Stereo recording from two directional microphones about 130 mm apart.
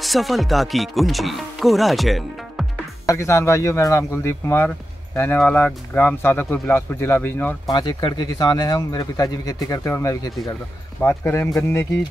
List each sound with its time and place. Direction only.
0.0 s speech: centre (ahead or behind)
3.1 s speech: 20° left (ahead or behind)
7.7 s speech: 35° left (ahead or behind); by 11.8 s 15° left (ahead or behind)